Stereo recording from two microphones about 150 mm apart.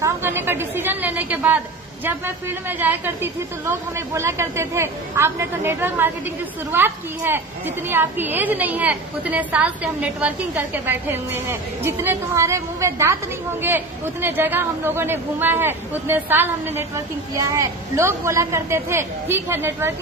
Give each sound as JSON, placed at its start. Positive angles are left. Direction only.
{"t": 0.0, "sound": "a woman's voice", "side_deg": -15}
{"t": 2.8, "sound": "a woman's voice", "side_deg": -15}